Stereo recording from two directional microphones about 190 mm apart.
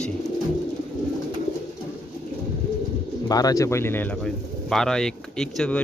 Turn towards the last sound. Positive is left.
turn(degrees=5)  # may be behind; listen again after turning